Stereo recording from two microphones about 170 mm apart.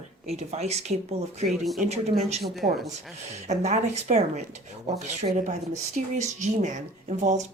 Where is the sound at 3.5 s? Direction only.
40° right (ahead or behind).